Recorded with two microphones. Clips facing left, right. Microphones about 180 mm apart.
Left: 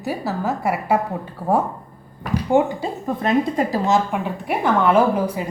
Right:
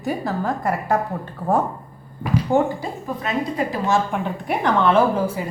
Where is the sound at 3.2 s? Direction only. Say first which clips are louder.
Left 5 dB; 45° left (ahead or behind).